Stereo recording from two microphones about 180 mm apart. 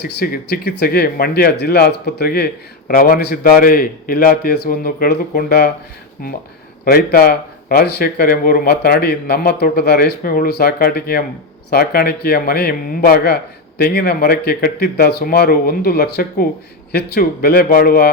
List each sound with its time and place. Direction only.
0.0 s speech: 65° left (ahead or behind)
6.8 s speech: 55° left (ahead or behind)